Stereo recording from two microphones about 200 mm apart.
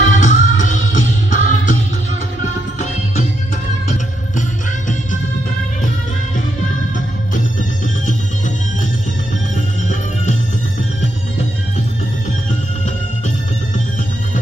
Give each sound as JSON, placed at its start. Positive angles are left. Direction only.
{"t": 0.1, "sound": "music", "side_deg": 40}
{"t": 4.4, "sound": "music", "side_deg": 40}
{"t": 7.8, "sound": "music", "side_deg": 40}